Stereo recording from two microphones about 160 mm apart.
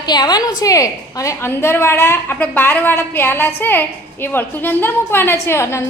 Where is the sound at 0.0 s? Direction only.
25° left (ahead or behind).